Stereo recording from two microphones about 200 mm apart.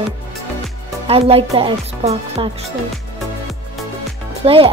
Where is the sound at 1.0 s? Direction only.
30° right (ahead or behind).